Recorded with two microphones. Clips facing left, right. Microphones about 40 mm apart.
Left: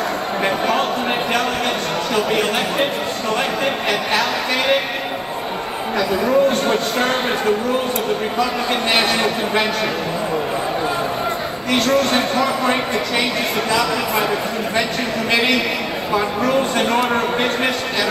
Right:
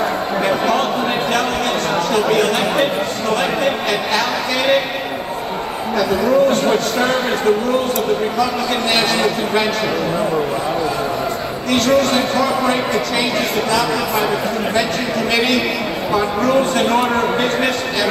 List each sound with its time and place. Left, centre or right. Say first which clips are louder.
0.4 s a sound: right 2 dB; centre
2.3 s a man's voice: right 3 dB; left
5.9 s a man's voice: right 2 dB; left
8.9 s speech: right 1 dB; centre
11.7 s a man's voice: right 2 dB; left
13.7 s speech: right 1 dB; centre
16.1 s a man's voice: right 2 dB; centre